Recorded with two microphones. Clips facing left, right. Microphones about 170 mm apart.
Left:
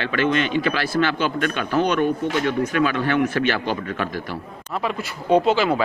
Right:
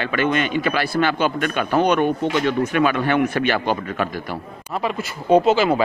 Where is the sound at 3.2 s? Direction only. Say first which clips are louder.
Right 2 dB; 15° right (ahead or behind).